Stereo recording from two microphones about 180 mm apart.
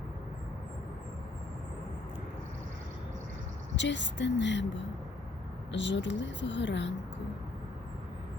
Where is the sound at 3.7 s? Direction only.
85° left.